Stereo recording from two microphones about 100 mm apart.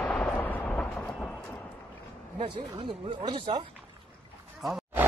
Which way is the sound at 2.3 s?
60° right (ahead or behind).